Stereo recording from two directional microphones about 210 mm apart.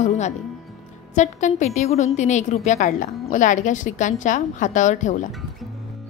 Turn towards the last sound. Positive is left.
turn(degrees=35)  # may be behind; listen again after turning